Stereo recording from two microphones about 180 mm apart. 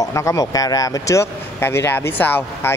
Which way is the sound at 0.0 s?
15° left (ahead or behind).